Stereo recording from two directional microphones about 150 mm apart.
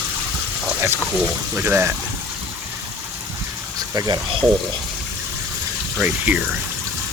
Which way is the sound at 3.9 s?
25° right (ahead or behind).